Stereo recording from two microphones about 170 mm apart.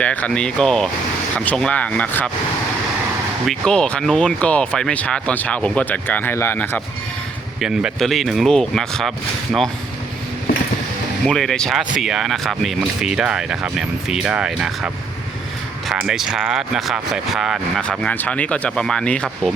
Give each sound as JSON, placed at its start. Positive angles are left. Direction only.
{"t": 0.0, "sound": "speech", "side_deg": 10}
{"t": 3.4, "sound": "speech", "side_deg": 0}
{"t": 7.6, "sound": "speech", "side_deg": -5}
{"t": 11.3, "sound": "speech", "side_deg": 5}
{"t": 16.0, "sound": "speech", "side_deg": -5}